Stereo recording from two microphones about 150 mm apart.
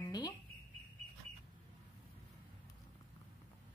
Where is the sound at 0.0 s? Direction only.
25° left (ahead or behind).